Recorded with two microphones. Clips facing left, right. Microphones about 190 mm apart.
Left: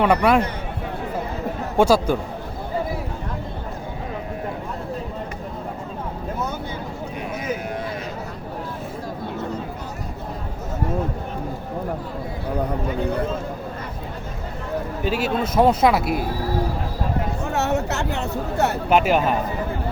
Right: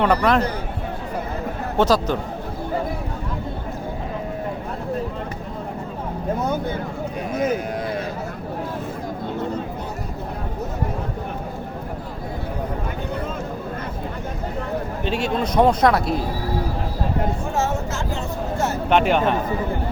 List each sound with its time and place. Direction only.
0.0 s a man's voice: 10° left (ahead or behind)
1.8 s a man's voice: 10° left (ahead or behind)
15.0 s speech: 5° left (ahead or behind)
17.5 s a sound: 70° left (ahead or behind)
18.9 s speech: 5° left (ahead or behind)